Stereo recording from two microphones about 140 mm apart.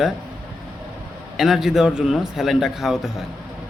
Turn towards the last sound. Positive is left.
turn(degrees=-5)  # may be behind; listen again after turning